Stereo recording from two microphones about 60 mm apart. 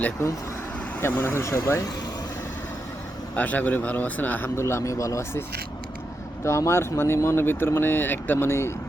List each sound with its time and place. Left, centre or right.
1.0 s speech: left
3.3 s a man's voice: left
4.4 s a man's voice: left
6.4 s speech: left